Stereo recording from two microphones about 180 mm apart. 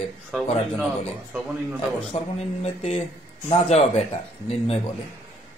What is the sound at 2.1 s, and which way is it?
Speech, 35° left (ahead or behind).